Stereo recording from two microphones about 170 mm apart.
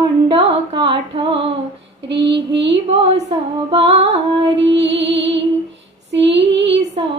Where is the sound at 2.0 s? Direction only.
90° right.